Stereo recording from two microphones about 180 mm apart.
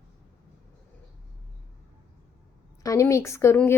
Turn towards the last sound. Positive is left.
turn(degrees=15)  # may be behind; listen again after turning